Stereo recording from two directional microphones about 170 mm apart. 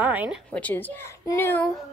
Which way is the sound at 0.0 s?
10° right (ahead or behind).